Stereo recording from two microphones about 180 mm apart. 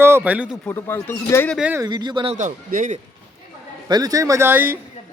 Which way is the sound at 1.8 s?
25° right (ahead or behind).